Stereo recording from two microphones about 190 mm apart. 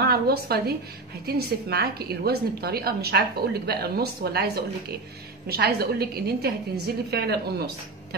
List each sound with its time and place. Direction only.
0.0 s a woman's voice: 55° right (ahead or behind)